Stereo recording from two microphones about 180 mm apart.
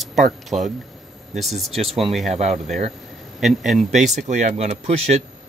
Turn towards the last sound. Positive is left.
turn(degrees=-35)  # may be behind; listen again after turning